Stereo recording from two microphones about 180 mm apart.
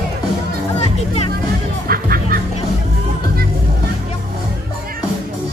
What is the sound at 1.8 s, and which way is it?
Music, 55° right (ahead or behind).